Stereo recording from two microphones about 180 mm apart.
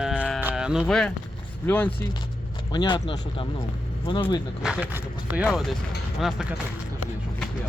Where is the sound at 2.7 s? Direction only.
25° left (ahead or behind).